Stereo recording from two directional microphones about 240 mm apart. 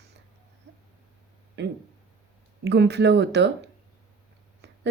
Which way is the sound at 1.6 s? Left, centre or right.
Right.